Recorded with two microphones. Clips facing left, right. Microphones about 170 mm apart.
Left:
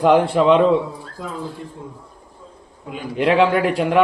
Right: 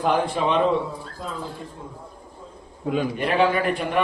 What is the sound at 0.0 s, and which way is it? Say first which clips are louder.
Speech: left 7 dB; 80° left.